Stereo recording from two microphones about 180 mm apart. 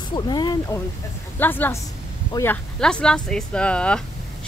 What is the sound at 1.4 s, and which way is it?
A woman's voice, 10° left (ahead or behind).